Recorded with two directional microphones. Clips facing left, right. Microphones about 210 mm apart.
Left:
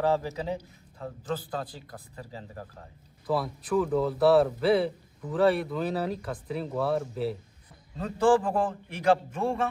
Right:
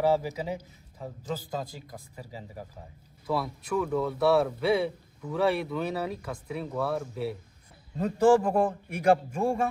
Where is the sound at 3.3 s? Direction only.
Centre (ahead or behind).